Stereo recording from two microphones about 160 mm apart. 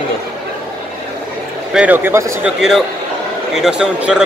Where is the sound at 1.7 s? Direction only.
10° right (ahead or behind).